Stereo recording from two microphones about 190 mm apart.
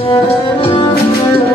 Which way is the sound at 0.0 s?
30° left (ahead or behind).